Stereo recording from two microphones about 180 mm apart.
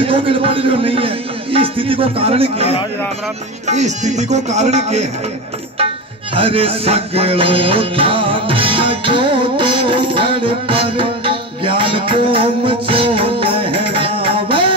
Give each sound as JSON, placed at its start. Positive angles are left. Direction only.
{"t": 0.0, "sound": "a man's voice", "side_deg": -30}
{"t": 6.3, "sound": "music", "side_deg": -30}